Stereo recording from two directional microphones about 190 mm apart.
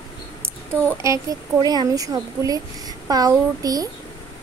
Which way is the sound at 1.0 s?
15° right (ahead or behind).